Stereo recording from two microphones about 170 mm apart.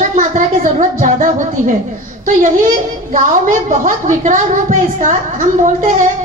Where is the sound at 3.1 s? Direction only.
50° right (ahead or behind).